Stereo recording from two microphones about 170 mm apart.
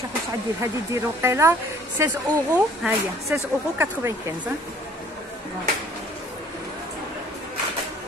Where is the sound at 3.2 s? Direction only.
15° right (ahead or behind).